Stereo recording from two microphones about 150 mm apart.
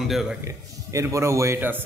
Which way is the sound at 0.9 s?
20° right (ahead or behind).